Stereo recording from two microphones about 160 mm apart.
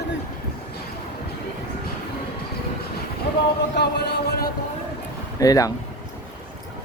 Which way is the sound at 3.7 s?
90° left.